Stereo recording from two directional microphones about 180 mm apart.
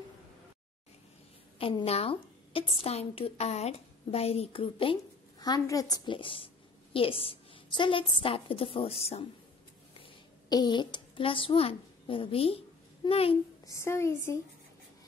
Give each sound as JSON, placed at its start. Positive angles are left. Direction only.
{"t": 1.6, "sound": "a woman's voice", "side_deg": 30}
{"t": 5.4, "sound": "a woman's voice", "side_deg": 20}
{"t": 9.9, "sound": "a sound", "side_deg": 25}
{"t": 13.7, "sound": "a woman's voice", "side_deg": 15}